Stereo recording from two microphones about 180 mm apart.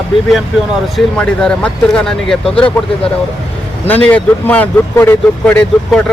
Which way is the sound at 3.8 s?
10° left (ahead or behind).